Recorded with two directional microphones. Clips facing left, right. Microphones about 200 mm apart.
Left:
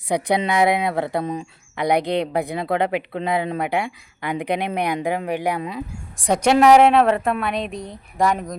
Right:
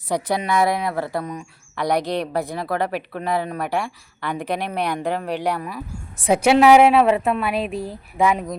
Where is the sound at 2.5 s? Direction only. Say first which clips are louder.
Left 2 dB; 20° left (ahead or behind).